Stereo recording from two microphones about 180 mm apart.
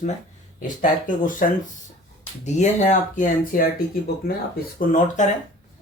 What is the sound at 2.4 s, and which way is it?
Speech, 40° left (ahead or behind).